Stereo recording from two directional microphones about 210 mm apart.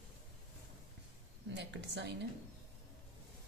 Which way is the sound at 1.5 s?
55° right (ahead or behind).